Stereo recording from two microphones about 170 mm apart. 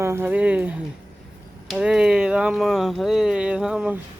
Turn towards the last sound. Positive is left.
turn(degrees=-5)  # may be behind; listen again after turning